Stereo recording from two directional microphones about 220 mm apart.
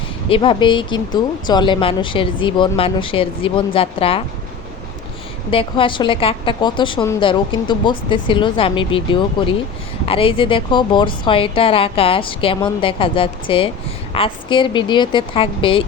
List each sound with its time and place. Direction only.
0.3 s a woman's voice: 25° left (ahead or behind)
5.5 s a woman's voice: 25° left (ahead or behind)